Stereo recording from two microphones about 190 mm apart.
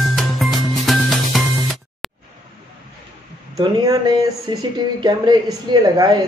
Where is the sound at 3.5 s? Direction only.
20° right (ahead or behind).